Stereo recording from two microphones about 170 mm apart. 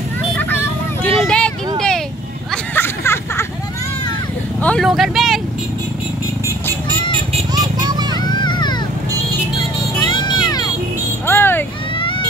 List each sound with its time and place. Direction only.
0.4 s vehicle: 10° left (ahead or behind)
2.5 s a sound: 10° left (ahead or behind)
4.6 s vehicle: 10° left (ahead or behind)
7.5 s vehicle: 25° right (ahead or behind)
8.2 s vehicle: 25° left (ahead or behind)
9.9 s music: 25° left (ahead or behind)
11.2 s vehicle: 10° left (ahead or behind)
11.9 s a sound: 30° left (ahead or behind)